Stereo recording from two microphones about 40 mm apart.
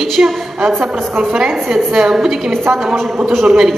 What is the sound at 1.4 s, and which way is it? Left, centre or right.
Speech, centre.